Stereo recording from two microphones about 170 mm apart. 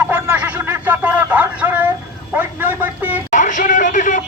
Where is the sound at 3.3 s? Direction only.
50° left (ahead or behind).